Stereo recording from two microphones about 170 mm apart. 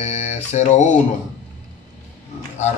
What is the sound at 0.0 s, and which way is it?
Music, 40° left (ahead or behind).